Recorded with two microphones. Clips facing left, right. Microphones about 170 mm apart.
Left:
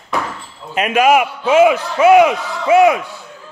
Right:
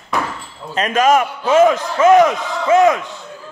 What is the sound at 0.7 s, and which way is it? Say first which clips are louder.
A man's voice: left 1 dB; 10° left (ahead or behind).